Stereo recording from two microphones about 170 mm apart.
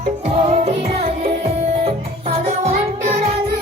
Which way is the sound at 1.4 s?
40° right (ahead or behind).